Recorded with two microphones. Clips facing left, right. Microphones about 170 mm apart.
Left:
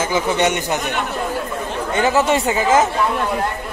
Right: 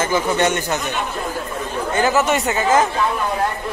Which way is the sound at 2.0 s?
25° left (ahead or behind).